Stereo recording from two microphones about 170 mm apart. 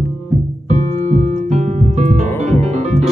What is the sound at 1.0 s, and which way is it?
Music, 40° right (ahead or behind).